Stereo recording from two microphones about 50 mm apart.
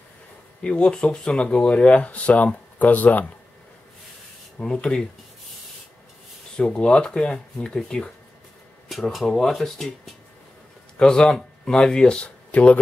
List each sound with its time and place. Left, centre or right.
0.7 s speech: centre; by 3.3 s left
4.6 s speech: centre
6.5 s speech: centre
9.3 s speech: centre
11.0 s speech: centre